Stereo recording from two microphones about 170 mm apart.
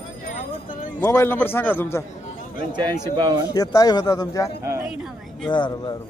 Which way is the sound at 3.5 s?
20° left (ahead or behind).